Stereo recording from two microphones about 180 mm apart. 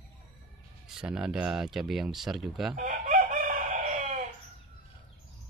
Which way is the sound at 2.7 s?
55° right (ahead or behind).